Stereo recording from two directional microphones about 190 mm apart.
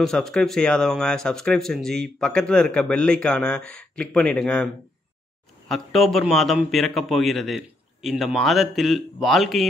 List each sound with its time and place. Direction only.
0.0 s speech: centre (ahead or behind)
5.7 s speech: centre (ahead or behind)